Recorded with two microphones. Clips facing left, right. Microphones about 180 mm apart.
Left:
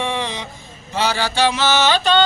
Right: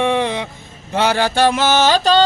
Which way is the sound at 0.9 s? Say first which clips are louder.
Right 4 dB; 55° right (ahead or behind).